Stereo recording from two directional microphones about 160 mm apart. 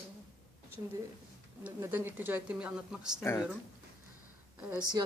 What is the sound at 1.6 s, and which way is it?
Speech, 15° right (ahead or behind).